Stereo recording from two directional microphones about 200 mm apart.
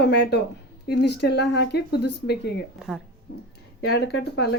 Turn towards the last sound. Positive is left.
turn(degrees=55)  # may be behind; listen again after turning